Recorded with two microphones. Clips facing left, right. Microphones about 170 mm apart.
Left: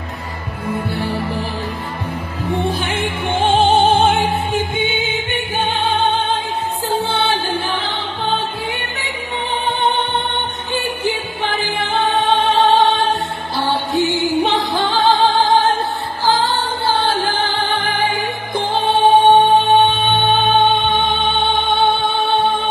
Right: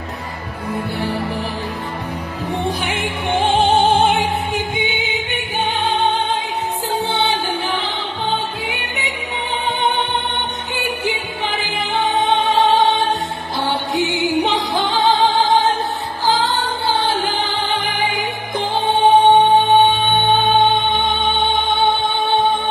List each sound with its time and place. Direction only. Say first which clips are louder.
2.8 s music: left 1 dB; 15° right (ahead or behind)
6.9 s music: left 2 dB; 20° right (ahead or behind)
10.7 s music: left 3 dB; 20° right (ahead or behind)
21.1 s music: left 1 dB; 20° right (ahead or behind)